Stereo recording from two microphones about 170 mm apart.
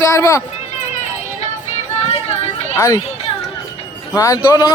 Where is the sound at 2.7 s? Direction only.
20° left (ahead or behind).